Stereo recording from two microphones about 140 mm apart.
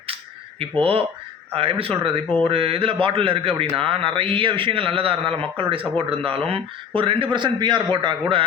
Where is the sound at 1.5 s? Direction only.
40° right (ahead or behind).